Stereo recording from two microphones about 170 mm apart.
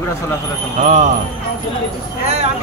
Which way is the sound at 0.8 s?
45° right (ahead or behind).